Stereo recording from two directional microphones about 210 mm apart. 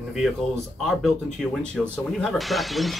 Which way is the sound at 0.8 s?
Centre (ahead or behind).